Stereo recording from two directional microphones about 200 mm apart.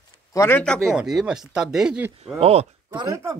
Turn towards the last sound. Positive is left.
turn(degrees=-15)  # may be behind; listen again after turning